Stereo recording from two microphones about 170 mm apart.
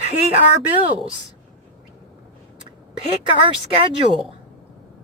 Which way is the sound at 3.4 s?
30° right (ahead or behind).